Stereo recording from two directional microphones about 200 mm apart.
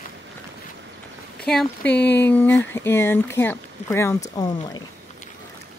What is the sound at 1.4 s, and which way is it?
Speech, 5° left (ahead or behind).